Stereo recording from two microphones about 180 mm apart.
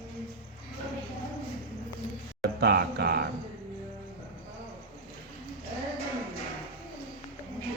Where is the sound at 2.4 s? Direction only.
60° right (ahead or behind).